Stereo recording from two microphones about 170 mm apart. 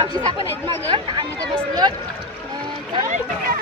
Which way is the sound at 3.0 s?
50° right (ahead or behind).